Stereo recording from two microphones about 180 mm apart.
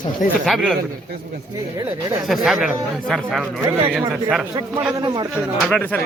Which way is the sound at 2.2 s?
Centre (ahead or behind).